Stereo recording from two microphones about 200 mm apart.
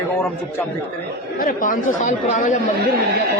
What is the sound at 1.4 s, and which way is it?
Speech, 40° left (ahead or behind).